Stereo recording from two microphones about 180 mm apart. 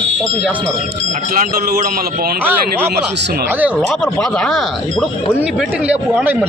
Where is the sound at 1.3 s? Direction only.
50° right (ahead or behind).